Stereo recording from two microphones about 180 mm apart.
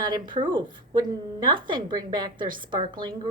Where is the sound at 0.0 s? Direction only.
25° right (ahead or behind).